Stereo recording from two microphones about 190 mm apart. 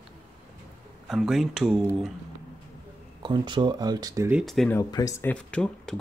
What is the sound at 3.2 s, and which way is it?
Speech, 25° right (ahead or behind).